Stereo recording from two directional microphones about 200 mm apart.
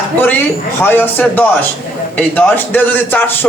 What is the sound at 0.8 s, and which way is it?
Speech, 10° left (ahead or behind).